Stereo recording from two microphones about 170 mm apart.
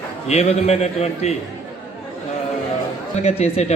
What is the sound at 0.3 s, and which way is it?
A man's voice, 40° left (ahead or behind).